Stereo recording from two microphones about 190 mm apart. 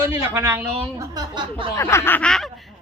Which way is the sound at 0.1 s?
15° right (ahead or behind).